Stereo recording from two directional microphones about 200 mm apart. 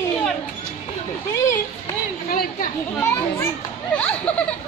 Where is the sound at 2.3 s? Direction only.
45° left (ahead or behind).